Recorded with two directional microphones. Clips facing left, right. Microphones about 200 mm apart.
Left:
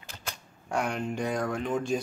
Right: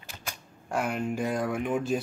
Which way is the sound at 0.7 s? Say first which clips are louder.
Right 1 dB; 5° right (ahead or behind).